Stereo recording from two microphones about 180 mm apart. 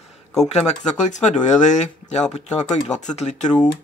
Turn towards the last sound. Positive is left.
turn(degrees=40)  # may be behind; listen again after turning